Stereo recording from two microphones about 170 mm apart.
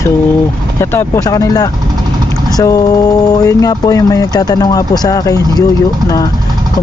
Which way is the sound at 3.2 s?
20° left (ahead or behind).